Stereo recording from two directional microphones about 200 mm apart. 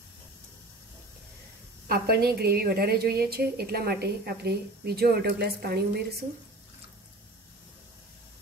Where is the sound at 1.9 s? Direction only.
50° right (ahead or behind).